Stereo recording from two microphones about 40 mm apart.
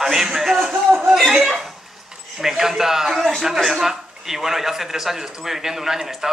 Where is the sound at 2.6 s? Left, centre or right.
Centre.